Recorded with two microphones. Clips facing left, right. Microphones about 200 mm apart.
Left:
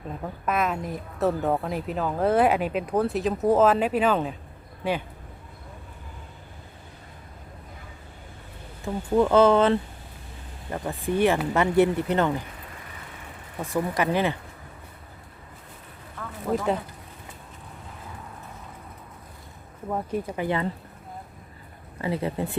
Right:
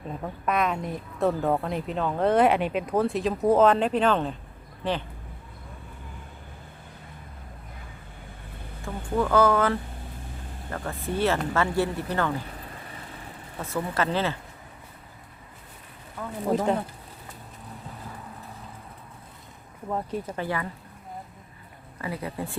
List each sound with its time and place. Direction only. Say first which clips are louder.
0.4 s speech: even; centre (ahead or behind)
8.8 s speech: left 5 dB; 20° left (ahead or behind)
13.6 s speech: left 2 dB; 15° left (ahead or behind)
19.9 s speech: left 2 dB; 10° left (ahead or behind)
22.0 s speech: left 5 dB; 25° left (ahead or behind)